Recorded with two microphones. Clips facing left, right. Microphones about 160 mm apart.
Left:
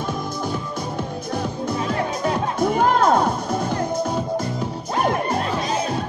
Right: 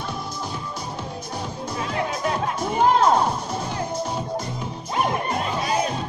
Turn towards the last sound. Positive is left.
turn(degrees=50)  # may be behind; listen again after turning